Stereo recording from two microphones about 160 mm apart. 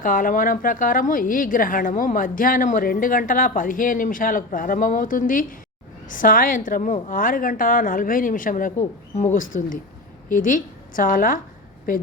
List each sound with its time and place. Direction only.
0.0 s a woman's voice: 60° left (ahead or behind)